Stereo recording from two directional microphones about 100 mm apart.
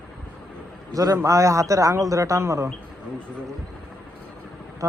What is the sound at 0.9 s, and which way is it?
A man's voice, 35° right (ahead or behind).